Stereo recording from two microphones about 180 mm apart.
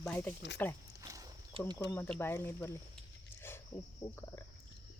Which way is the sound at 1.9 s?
10° left (ahead or behind).